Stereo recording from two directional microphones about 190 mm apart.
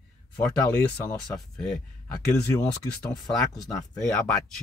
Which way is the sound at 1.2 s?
Centre (ahead or behind).